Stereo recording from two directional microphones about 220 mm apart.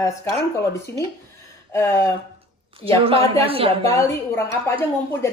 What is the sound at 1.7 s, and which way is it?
Speech, 10° left (ahead or behind).